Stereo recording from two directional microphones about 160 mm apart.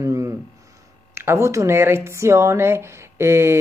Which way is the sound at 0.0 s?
20° right (ahead or behind).